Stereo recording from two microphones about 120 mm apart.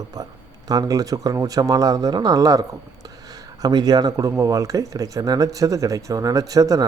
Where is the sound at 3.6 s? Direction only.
35° right (ahead or behind).